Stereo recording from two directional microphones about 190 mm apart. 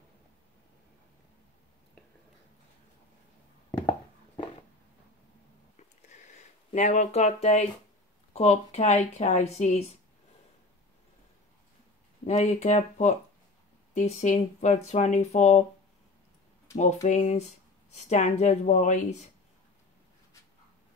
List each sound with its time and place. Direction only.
5.8 s a sound: 40° left (ahead or behind)
8.3 s speech: 35° left (ahead or behind)
12.3 s speech: 35° left (ahead or behind)
16.7 s speech: 40° left (ahead or behind)